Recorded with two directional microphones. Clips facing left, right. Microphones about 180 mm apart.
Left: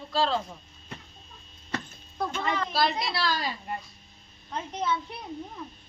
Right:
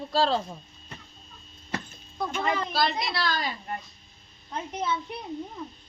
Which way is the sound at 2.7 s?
5° left (ahead or behind).